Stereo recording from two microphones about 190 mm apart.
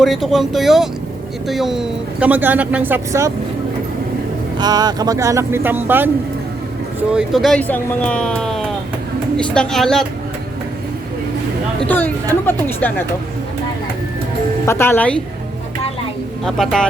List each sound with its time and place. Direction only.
0.0 s speech: centre (ahead or behind)
4.5 s speech: 20° right (ahead or behind)
7.1 s speech: 5° right (ahead or behind)
11.9 s speech: 10° left (ahead or behind)
14.7 s speech: 10° left (ahead or behind)
16.4 s speech: centre (ahead or behind)